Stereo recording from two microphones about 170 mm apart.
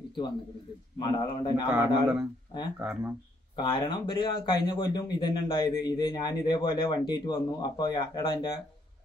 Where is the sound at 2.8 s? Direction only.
5° right (ahead or behind).